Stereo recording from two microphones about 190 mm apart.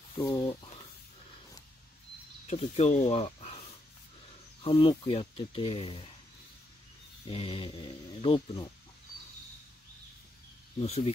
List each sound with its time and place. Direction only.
0.2 s speech: 20° left (ahead or behind)
2.5 s speech: 35° left (ahead or behind)
4.6 s speech: 25° left (ahead or behind)
7.2 s speech: 30° left (ahead or behind)
10.8 s speech: 35° left (ahead or behind)